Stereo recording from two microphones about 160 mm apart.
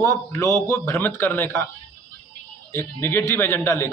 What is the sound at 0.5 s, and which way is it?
A man's voice, 15° left (ahead or behind).